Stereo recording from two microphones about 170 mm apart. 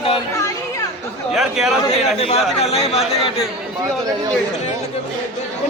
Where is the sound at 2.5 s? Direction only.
40° left (ahead or behind).